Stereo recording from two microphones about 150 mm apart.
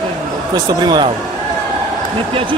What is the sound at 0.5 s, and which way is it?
Speech, 30° right (ahead or behind).